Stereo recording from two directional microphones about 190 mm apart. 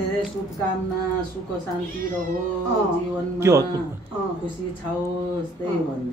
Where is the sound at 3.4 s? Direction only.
15° right (ahead or behind).